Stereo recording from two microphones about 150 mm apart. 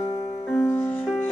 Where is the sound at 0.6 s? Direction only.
10° left (ahead or behind).